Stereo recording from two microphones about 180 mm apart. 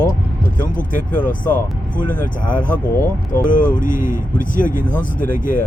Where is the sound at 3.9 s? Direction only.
15° right (ahead or behind).